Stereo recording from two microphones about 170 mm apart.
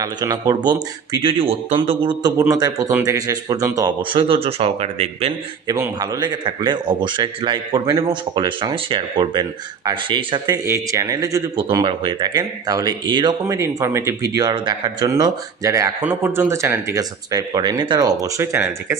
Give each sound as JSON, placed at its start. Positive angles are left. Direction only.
{"t": 0.0, "sound": "speech", "side_deg": -20}
{"t": 5.6, "sound": "speech", "side_deg": -20}